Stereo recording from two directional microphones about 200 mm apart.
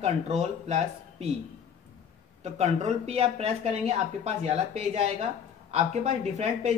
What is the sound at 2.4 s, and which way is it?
A woman's voice, 35° right (ahead or behind).